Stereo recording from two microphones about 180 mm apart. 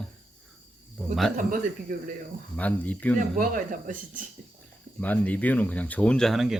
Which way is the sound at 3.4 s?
50° right (ahead or behind).